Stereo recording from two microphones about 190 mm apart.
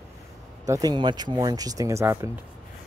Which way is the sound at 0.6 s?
20° right (ahead or behind).